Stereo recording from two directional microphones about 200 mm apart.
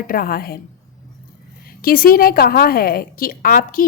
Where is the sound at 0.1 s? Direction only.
45° left (ahead or behind).